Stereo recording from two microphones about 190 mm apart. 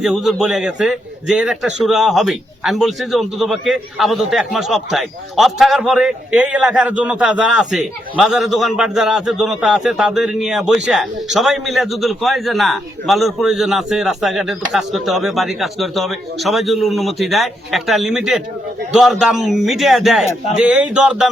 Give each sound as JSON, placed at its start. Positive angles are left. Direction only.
{"t": 0.0, "sound": "a man's voice", "side_deg": 0}